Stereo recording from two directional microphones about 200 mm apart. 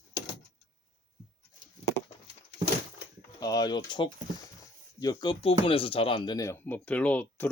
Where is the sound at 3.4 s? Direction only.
20° left (ahead or behind).